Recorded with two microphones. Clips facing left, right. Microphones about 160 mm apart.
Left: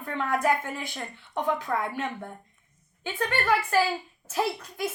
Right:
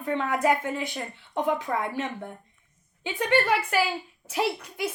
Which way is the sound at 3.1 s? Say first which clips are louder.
Right 2 dB; 20° right (ahead or behind).